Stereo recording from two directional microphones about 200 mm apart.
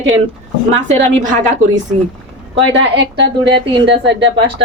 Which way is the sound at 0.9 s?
35° right (ahead or behind).